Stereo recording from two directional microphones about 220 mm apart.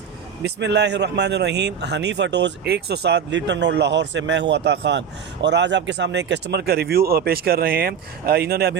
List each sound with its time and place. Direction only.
0.4 s a man's voice: 50° right (ahead or behind)